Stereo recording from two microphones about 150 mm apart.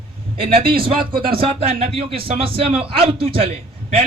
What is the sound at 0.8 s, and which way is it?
Speech, 80° right.